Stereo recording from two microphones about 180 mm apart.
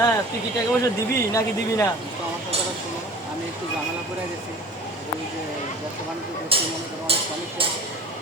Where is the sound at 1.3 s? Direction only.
15° left (ahead or behind).